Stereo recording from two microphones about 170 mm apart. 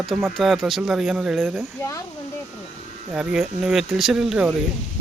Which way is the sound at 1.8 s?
20° left (ahead or behind).